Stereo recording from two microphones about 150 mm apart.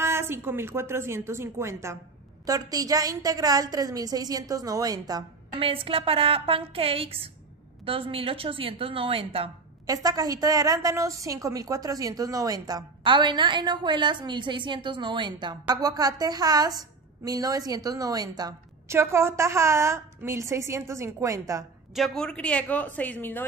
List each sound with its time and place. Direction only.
0.0 s a woman's voice: 15° right (ahead or behind)
5.6 s a woman's voice: 40° right (ahead or behind)
9.8 s a woman's voice: 25° right (ahead or behind)
21.9 s a woman's voice: centre (ahead or behind)